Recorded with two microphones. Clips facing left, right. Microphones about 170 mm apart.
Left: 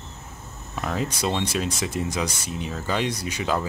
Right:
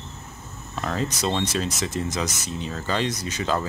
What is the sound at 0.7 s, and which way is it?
Speech, 10° left (ahead or behind).